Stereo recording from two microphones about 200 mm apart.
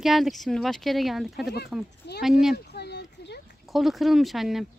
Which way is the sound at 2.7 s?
55° left (ahead or behind).